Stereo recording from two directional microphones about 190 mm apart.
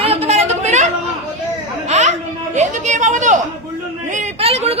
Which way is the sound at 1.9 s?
35° right (ahead or behind).